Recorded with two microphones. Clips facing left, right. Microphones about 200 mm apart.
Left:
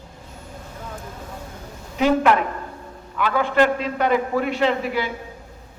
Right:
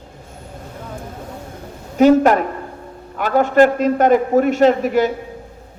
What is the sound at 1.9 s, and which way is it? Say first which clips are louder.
A man's voice: right 6 dB; 45° right (ahead or behind).